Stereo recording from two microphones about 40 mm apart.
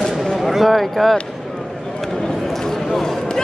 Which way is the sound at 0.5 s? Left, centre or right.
Centre.